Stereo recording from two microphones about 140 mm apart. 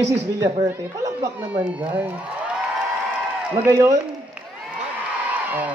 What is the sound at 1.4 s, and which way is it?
Speech, 10° right (ahead or behind).